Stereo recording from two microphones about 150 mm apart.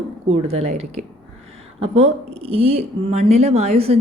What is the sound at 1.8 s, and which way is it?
A woman's voice, 40° right (ahead or behind).